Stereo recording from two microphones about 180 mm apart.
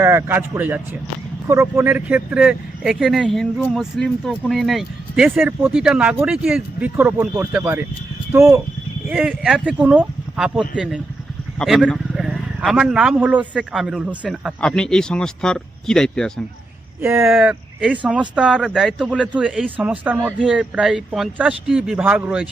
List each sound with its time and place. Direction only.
0.0 s speech: 15° right (ahead or behind)
9.0 s speech: 5° right (ahead or behind)
17.0 s speech: 15° right (ahead or behind)